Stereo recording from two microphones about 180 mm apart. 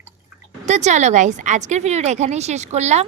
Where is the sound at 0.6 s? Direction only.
40° right (ahead or behind).